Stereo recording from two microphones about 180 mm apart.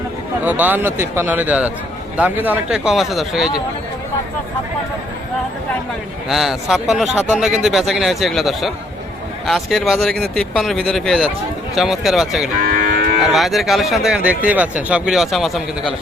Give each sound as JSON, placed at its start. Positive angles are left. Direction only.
{"t": 0.4, "sound": "a man's voice", "side_deg": -10}
{"t": 6.2, "sound": "speech", "side_deg": 0}
{"t": 12.6, "sound": "moo", "side_deg": -50}
{"t": 13.3, "sound": "speech", "side_deg": 0}